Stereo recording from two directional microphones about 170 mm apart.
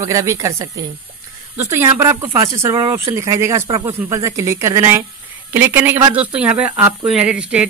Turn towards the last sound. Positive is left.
turn(degrees=-5)  # may be behind; listen again after turning